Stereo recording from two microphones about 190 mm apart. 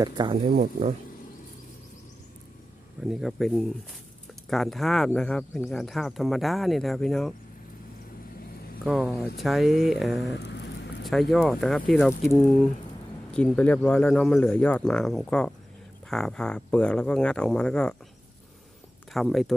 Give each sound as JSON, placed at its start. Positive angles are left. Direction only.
{"t": 0.0, "sound": "speech", "side_deg": -20}
{"t": 3.0, "sound": "speech", "side_deg": 0}
{"t": 8.8, "sound": "speech", "side_deg": 0}
{"t": 10.3, "sound": "a sound", "side_deg": 65}
{"t": 11.1, "sound": "speech", "side_deg": 0}
{"t": 19.1, "sound": "speech", "side_deg": 0}